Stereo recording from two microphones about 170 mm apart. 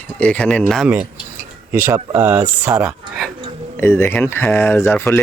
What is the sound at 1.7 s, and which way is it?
Speech, 15° right (ahead or behind).